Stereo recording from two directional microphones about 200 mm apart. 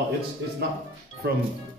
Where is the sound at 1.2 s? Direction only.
55° right (ahead or behind).